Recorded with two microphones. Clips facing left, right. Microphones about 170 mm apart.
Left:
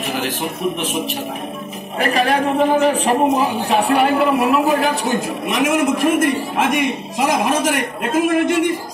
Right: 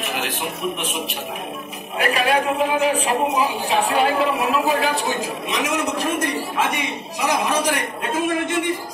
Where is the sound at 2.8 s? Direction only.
45° left (ahead or behind).